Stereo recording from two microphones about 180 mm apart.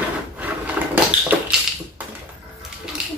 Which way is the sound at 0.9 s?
10° right (ahead or behind).